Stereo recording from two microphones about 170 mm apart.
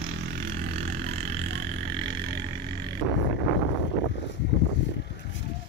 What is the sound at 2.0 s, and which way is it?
Vehicle, 85° right.